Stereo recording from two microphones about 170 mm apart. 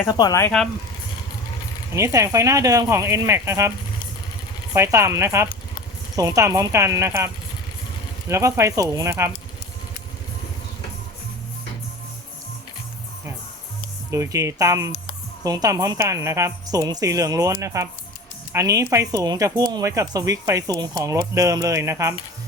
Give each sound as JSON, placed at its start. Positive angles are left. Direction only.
{"t": 0.0, "sound": "speech", "side_deg": 20}
{"t": 1.9, "sound": "speech", "side_deg": -15}
{"t": 4.7, "sound": "speech", "side_deg": -15}
{"t": 8.3, "sound": "speech", "side_deg": -15}
{"t": 14.1, "sound": "speech", "side_deg": -15}